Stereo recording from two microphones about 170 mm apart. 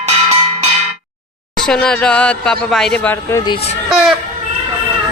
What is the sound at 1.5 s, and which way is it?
Speech, 5° left (ahead or behind).